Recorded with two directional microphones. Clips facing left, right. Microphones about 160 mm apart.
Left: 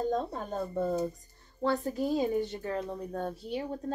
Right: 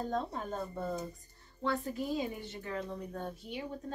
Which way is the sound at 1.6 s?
40° left (ahead or behind).